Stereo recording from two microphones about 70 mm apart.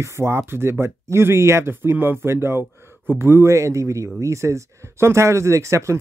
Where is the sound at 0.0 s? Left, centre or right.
Right.